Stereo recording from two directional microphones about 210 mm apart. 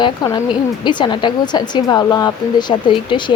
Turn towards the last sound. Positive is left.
turn(degrees=20)  # may be behind; listen again after turning